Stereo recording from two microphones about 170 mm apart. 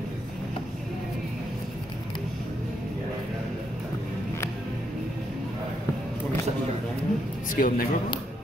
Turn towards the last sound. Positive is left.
turn(degrees=55)  # may be behind; listen again after turning